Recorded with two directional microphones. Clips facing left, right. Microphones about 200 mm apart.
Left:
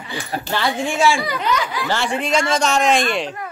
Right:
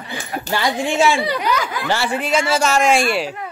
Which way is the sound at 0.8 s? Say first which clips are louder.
Right 1 dB; 25° right (ahead or behind).